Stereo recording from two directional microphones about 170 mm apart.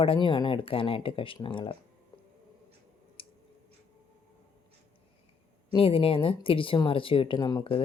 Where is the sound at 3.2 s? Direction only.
30° left (ahead or behind).